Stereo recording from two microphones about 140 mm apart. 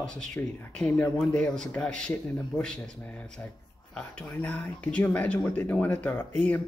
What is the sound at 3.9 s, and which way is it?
Speech, 10° left (ahead or behind).